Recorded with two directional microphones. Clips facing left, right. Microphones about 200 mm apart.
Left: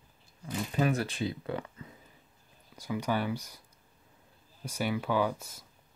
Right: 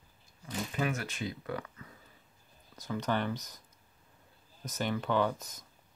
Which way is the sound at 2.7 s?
10° left (ahead or behind).